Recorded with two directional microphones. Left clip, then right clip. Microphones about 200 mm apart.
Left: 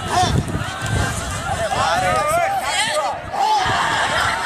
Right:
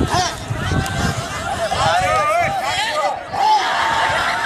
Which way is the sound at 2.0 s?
55° right (ahead or behind).